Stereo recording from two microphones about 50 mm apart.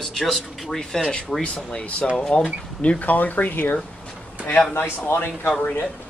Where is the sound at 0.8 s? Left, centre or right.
Centre.